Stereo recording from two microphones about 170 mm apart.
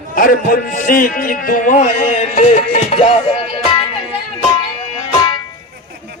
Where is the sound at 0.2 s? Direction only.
55° left (ahead or behind); by 3.2 s 40° left (ahead or behind).